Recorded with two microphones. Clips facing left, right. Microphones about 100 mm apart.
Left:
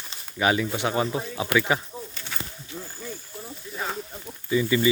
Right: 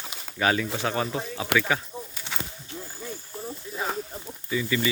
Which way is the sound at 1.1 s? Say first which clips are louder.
Left 2 dB; 5° left (ahead or behind).